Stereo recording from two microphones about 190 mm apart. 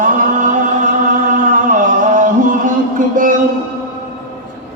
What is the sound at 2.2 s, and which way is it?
Music, 45° right (ahead or behind).